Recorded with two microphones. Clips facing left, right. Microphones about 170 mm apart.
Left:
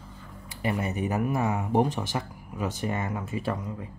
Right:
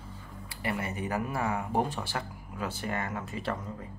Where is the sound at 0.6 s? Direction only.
20° left (ahead or behind).